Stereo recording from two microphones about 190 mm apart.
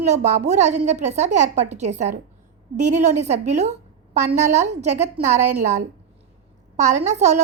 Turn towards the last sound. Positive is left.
turn(degrees=-35)  # may be behind; listen again after turning